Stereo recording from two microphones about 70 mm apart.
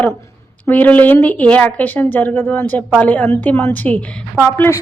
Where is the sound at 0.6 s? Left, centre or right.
Left.